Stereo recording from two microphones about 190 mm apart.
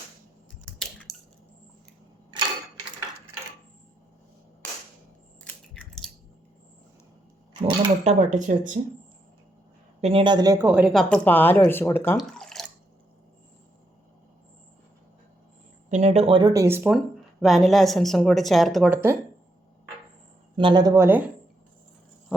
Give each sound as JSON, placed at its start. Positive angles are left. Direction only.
{"t": 0.6, "sound": "a sound", "side_deg": 5}
{"t": 5.5, "sound": "biting", "side_deg": 5}
{"t": 7.5, "sound": "speech", "side_deg": -25}
{"t": 8.0, "sound": "speech", "side_deg": -40}
{"t": 10.0, "sound": "speech", "side_deg": -30}
{"t": 12.1, "sound": "drip", "side_deg": 0}
{"t": 15.9, "sound": "speech", "side_deg": -35}
{"t": 17.4, "sound": "speech", "side_deg": 0}
{"t": 20.6, "sound": "speech", "side_deg": -25}